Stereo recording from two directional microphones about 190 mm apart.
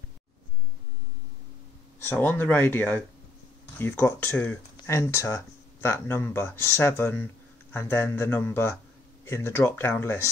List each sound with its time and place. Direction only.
2.0 s speech: 10° left (ahead or behind)